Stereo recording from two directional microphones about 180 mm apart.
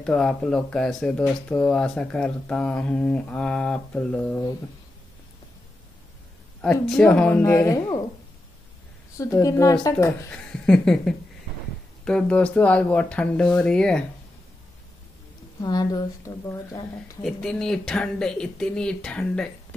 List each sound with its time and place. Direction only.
0.0 s speech: 5° left (ahead or behind)
6.6 s speech: 5° left (ahead or behind)
9.2 s speech: 20° left (ahead or behind)
15.6 s speech: 20° left (ahead or behind)
17.2 s speech: centre (ahead or behind)